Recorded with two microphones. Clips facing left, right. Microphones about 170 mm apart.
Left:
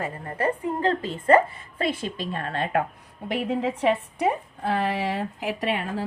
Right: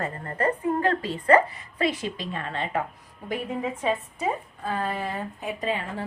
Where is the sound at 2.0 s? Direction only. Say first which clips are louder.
Left 2 dB; 45° left (ahead or behind).